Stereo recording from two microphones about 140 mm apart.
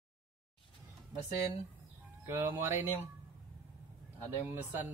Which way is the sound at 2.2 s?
15° right (ahead or behind).